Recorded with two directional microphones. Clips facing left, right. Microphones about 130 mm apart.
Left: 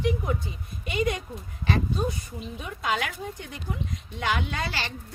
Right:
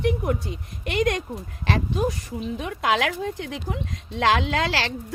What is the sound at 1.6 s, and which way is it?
Speech, 90° right.